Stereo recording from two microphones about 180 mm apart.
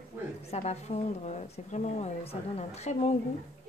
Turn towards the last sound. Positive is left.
turn(degrees=35)  # may be behind; listen again after turning